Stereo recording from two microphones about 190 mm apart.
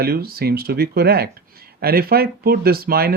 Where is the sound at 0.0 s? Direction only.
55° right (ahead or behind).